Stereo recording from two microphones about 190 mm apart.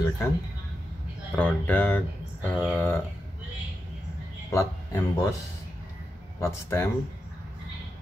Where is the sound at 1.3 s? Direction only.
10° left (ahead or behind).